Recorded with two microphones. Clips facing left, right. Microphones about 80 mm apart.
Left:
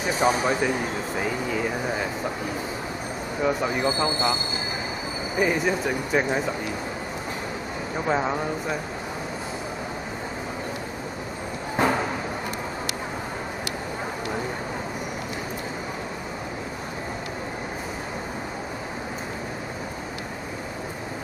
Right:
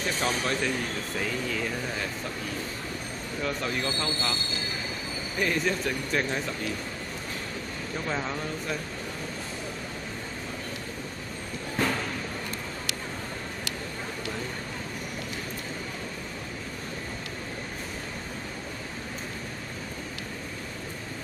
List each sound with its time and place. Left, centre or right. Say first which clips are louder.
0.0 s speech: left 7 dB; centre
3.3 s speech: left 6 dB; centre
7.9 s speech: left 7 dB; left
11.7 s music: left 6 dB; left